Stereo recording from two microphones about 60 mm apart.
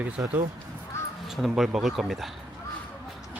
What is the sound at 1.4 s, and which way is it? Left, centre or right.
Speech, centre.